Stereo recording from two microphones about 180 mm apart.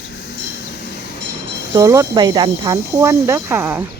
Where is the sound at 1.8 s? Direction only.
20° right (ahead or behind).